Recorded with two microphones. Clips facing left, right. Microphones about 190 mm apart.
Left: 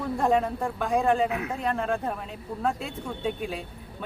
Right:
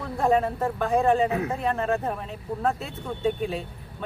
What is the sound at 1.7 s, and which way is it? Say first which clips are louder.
A woman's voice: even; 5° right (ahead or behind).